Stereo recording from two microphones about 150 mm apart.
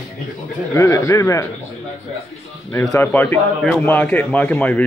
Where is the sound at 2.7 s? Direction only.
20° left (ahead or behind).